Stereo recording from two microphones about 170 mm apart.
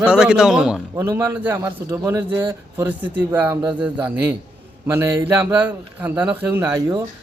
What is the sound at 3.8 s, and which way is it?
A man's voice, 10° right (ahead or behind).